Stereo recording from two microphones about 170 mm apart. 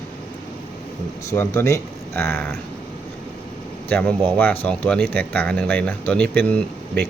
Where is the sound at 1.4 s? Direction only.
15° left (ahead or behind).